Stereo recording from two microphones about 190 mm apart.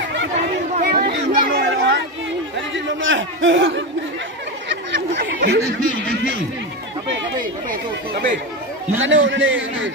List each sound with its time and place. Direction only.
0.7 s chatter: 50° right (ahead or behind)
2.5 s chatter: 85° right
4.6 s a sound: 70° right (ahead or behind)
7.7 s speech: 50° right (ahead or behind)
9.0 s a man's voice: 80° right